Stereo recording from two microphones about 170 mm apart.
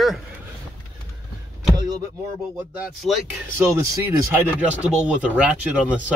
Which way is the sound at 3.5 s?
15° right (ahead or behind).